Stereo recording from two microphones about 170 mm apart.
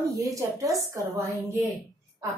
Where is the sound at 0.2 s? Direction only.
20° right (ahead or behind).